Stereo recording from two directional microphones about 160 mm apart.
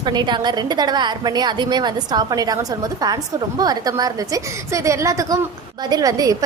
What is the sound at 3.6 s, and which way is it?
A woman's voice, 25° right (ahead or behind).